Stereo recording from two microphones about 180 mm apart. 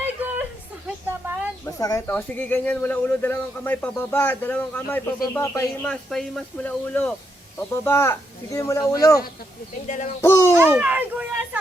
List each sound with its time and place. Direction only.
1.2 s a sound: 10° right (ahead or behind)
1.6 s a sound: 20° left (ahead or behind)
2.0 s speech: 10° left (ahead or behind)
9.8 s speech: 45° left (ahead or behind)
10.2 s speech: 15° left (ahead or behind)
10.5 s a child's voice: 15° right (ahead or behind)